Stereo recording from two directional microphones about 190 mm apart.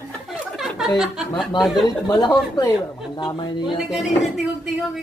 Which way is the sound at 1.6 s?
Centre (ahead or behind).